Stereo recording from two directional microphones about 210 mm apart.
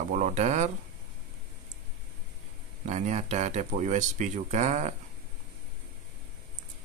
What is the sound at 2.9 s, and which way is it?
Speech, 35° right (ahead or behind).